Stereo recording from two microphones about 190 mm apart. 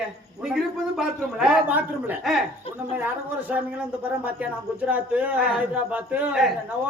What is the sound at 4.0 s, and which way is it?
Speech, 10° right (ahead or behind).